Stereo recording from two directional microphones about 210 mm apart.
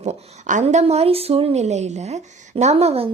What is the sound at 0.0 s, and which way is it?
Speech, 35° right (ahead or behind).